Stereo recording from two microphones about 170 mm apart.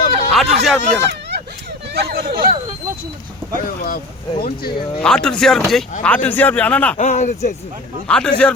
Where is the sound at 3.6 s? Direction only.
60° left (ahead or behind).